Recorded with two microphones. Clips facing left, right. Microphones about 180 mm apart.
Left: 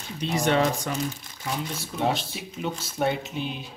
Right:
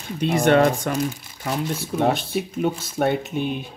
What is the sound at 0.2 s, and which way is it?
Speech, 55° right (ahead or behind).